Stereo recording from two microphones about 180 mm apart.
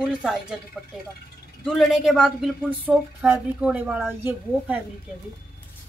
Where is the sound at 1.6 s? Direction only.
Centre (ahead or behind).